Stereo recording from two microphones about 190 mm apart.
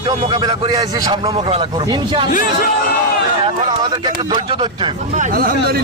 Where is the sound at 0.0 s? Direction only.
20° right (ahead or behind).